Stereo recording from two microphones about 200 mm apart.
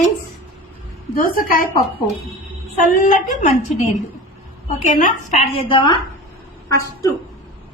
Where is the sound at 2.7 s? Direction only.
40° left (ahead or behind); by 5.9 s 25° left (ahead or behind).